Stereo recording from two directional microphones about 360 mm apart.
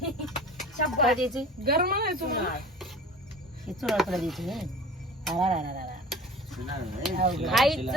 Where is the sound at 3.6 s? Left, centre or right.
Centre.